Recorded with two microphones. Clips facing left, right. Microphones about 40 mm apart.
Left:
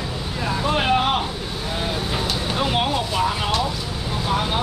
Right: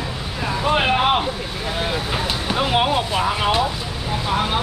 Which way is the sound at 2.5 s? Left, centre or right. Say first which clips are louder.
Right 4 dB; centre.